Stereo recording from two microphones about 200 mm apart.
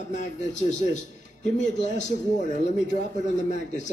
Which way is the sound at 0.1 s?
35° left (ahead or behind).